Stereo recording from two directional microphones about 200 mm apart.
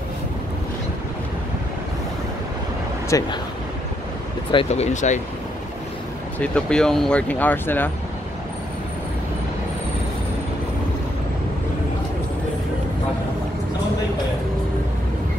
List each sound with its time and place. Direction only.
3.1 s speech: 15° left (ahead or behind)
4.5 s speech: 30° left (ahead or behind)
6.4 s speech: 5° left (ahead or behind)